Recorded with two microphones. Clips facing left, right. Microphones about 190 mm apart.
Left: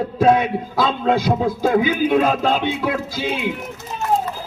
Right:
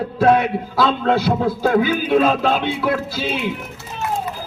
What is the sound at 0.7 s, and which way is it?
A man's voice, 15° left (ahead or behind).